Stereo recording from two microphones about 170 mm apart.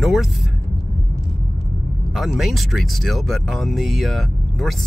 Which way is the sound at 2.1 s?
Centre (ahead or behind).